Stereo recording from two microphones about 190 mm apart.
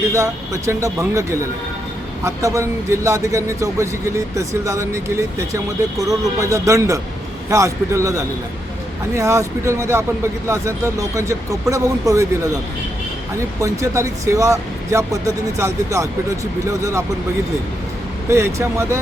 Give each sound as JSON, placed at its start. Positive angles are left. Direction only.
{"t": 0.1, "sound": "speech", "side_deg": -15}
{"t": 13.6, "sound": "speech", "side_deg": -15}
{"t": 18.3, "sound": "speech", "side_deg": -15}